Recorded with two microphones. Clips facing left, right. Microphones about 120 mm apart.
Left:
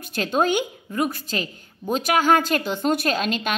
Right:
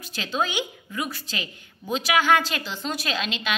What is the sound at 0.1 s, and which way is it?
A woman's voice, 50° left (ahead or behind).